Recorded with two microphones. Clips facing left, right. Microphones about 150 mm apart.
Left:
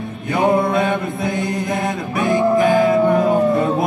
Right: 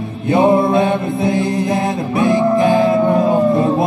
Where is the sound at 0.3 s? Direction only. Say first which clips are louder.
Right 4 dB; 25° right (ahead or behind).